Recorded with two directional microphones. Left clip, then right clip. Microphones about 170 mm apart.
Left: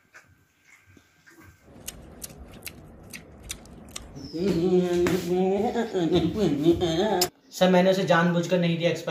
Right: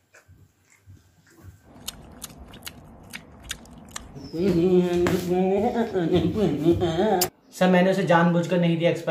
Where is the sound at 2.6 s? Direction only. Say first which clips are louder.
Right 1 dB; 65° right (ahead or behind).